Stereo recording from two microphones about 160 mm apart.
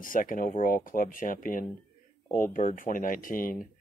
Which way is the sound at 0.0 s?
60° left (ahead or behind).